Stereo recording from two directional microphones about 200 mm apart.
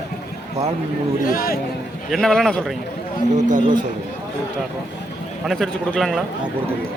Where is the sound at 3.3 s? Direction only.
40° right (ahead or behind).